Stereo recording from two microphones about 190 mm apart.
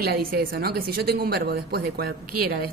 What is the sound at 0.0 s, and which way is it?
A woman's voice, 50° right (ahead or behind).